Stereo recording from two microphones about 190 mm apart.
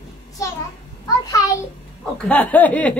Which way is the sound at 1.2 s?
15° left (ahead or behind).